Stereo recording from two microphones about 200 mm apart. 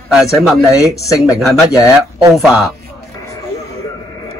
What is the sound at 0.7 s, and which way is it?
Speech, 15° left (ahead or behind).